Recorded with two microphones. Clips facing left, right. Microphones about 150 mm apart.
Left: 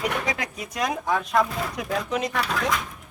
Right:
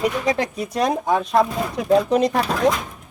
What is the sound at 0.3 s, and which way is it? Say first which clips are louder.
Speech: right 8 dB; 35° right (ahead or behind).